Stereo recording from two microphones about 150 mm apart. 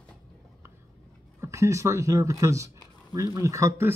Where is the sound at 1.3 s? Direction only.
20° right (ahead or behind).